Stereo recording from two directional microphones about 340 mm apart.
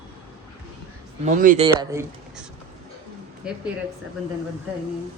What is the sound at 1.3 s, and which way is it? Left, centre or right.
A woman's voice, right.